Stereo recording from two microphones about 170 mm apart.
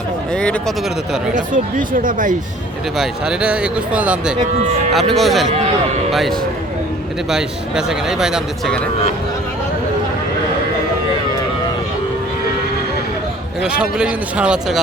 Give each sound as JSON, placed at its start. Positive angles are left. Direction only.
{"t": 1.5, "sound": "speech", "side_deg": -50}
{"t": 3.0, "sound": "a man's voice", "side_deg": -5}
{"t": 13.6, "sound": "a man's voice", "side_deg": -5}